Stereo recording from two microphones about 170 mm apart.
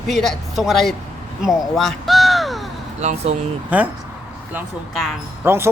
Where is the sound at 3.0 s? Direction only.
40° right (ahead or behind).